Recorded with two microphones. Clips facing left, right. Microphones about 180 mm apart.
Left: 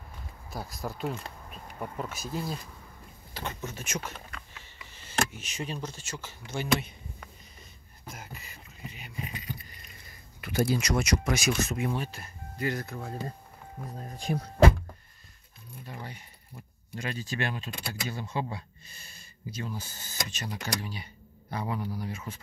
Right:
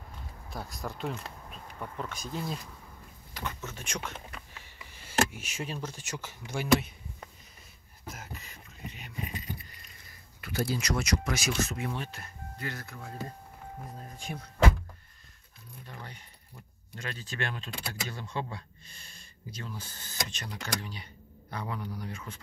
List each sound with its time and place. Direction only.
0.5 s speech: centre (ahead or behind)
3.6 s speech: 5° left (ahead or behind)
4.9 s speech: 10° right (ahead or behind)
8.0 s beatboxing: centre (ahead or behind)
10.4 s speech: 20° left (ahead or behind)
12.6 s speech: 15° left (ahead or behind)
14.1 s speech: 35° left (ahead or behind)
15.8 s keys jangling: 10° left (ahead or behind)
16.9 s speech: 10° left (ahead or behind)